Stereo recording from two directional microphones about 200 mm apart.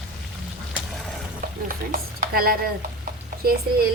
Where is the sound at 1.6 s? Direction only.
45° right (ahead or behind).